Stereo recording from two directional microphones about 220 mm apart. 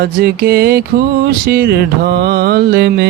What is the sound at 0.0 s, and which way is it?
Mantra, 45° right (ahead or behind).